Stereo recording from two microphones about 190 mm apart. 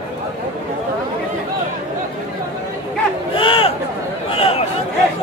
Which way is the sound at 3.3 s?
30° left (ahead or behind).